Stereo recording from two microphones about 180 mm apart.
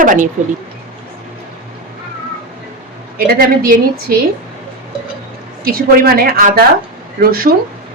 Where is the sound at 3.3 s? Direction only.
55° right (ahead or behind).